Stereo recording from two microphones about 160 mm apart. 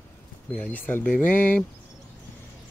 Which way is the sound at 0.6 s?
10° left (ahead or behind).